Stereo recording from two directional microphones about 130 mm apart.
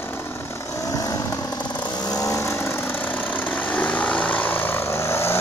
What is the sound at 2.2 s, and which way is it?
Vehicle, 20° left (ahead or behind).